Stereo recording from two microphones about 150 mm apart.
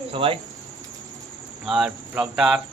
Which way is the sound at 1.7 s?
5° right (ahead or behind).